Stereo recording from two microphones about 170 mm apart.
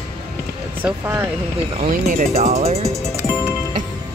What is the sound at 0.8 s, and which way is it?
Speech, 10° right (ahead or behind).